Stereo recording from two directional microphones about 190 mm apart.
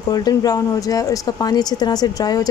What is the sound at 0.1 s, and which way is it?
Speech, 20° left (ahead or behind).